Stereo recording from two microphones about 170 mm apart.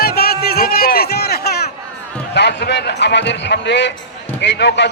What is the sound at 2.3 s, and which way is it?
Speech, 90° left.